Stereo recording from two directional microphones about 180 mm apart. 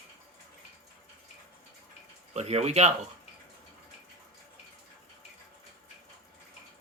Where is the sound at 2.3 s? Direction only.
35° right (ahead or behind).